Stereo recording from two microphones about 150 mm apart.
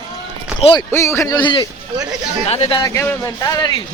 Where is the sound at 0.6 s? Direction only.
35° left (ahead or behind).